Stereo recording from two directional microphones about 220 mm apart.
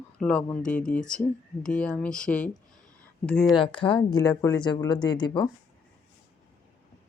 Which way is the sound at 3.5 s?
20° left (ahead or behind).